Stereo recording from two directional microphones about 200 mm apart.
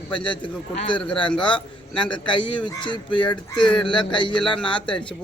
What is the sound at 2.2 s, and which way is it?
Speech, 25° left (ahead or behind).